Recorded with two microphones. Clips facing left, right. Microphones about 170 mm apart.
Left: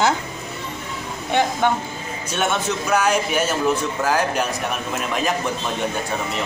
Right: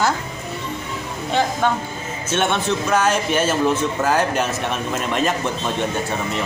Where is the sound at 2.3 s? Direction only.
Centre (ahead or behind).